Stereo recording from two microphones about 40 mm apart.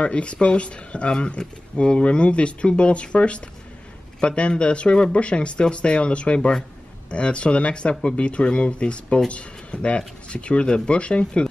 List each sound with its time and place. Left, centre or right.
0.0 s speech: left